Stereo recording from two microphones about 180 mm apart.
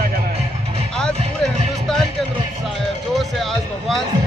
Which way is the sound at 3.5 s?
Centre (ahead or behind).